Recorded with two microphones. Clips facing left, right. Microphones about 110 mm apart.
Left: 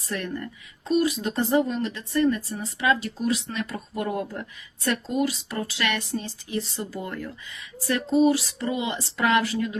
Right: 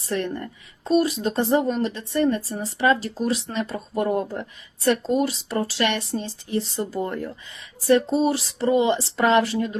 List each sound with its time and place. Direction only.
0.0 s speech: 30° right (ahead or behind)